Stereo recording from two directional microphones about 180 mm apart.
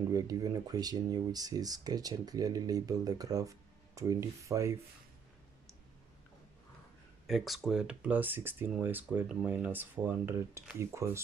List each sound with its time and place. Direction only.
0.1 s speech: 20° right (ahead or behind)
7.2 s speech: centre (ahead or behind)